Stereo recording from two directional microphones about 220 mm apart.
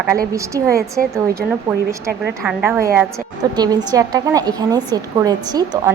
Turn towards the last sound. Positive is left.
turn(degrees=-15)  # may be behind; listen again after turning